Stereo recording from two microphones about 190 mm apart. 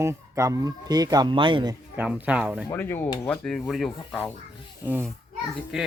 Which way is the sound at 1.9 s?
5° right (ahead or behind).